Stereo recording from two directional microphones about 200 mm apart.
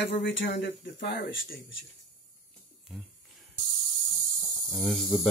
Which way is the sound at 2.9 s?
Centre (ahead or behind).